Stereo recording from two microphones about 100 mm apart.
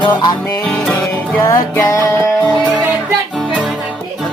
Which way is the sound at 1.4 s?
30° left (ahead or behind).